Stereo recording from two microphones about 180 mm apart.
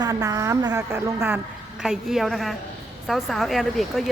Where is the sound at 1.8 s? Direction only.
5° right (ahead or behind).